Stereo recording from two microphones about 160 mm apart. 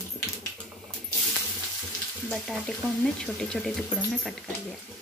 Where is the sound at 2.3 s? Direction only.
Centre (ahead or behind).